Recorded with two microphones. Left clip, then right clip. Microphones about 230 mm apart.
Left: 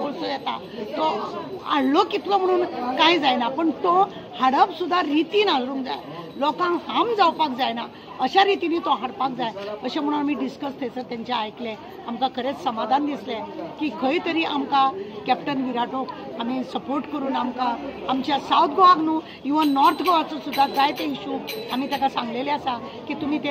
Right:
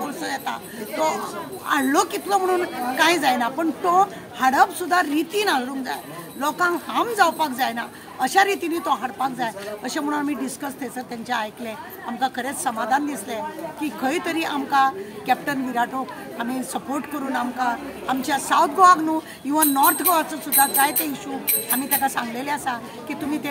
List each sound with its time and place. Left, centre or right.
0.0 s a woman's voice: right